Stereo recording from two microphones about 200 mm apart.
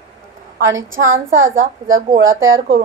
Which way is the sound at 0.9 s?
75° right (ahead or behind).